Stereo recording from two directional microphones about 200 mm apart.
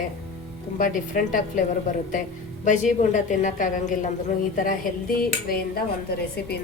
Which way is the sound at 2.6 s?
40° left (ahead or behind).